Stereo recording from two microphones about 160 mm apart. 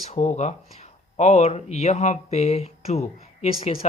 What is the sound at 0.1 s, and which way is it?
Speech, 45° left (ahead or behind).